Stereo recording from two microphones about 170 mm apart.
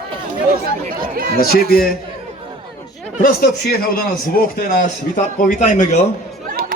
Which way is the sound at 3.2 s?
60° left (ahead or behind).